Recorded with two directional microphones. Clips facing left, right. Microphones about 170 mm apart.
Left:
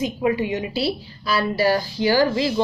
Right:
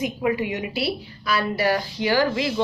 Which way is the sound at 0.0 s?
25° left (ahead or behind).